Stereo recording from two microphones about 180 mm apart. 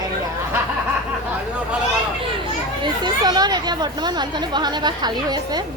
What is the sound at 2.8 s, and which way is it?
Speech, 25° right (ahead or behind).